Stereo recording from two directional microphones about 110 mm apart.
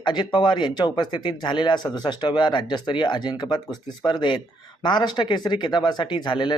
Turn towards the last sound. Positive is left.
turn(degrees=45)  # may be behind; listen again after turning